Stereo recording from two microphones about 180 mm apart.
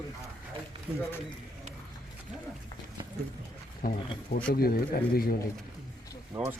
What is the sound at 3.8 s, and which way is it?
Speech, 50° left (ahead or behind).